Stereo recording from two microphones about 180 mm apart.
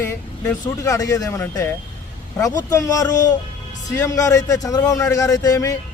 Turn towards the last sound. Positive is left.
turn(degrees=15)  # may be behind; listen again after turning